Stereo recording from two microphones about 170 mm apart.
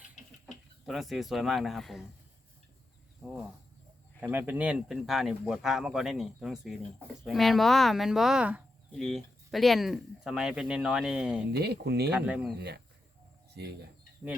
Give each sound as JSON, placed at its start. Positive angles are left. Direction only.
{"t": 0.2, "sound": "a sound", "side_deg": 45}
{"t": 0.9, "sound": "speech", "side_deg": 0}
{"t": 4.2, "sound": "speech", "side_deg": -10}
{"t": 11.5, "sound": "speech", "side_deg": -75}
{"t": 12.1, "sound": "speech", "side_deg": -5}
{"t": 12.5, "sound": "speech", "side_deg": -75}
{"t": 13.5, "sound": "cricket", "side_deg": -75}